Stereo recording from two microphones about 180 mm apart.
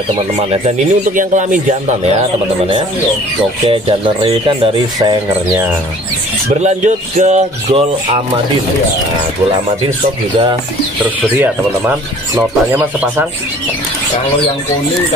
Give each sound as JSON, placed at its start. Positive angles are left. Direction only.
{"t": 0.7, "sound": "speech", "side_deg": -45}
{"t": 3.6, "sound": "speech", "side_deg": -30}
{"t": 7.2, "sound": "a sound", "side_deg": -40}
{"t": 11.3, "sound": "speech", "side_deg": -10}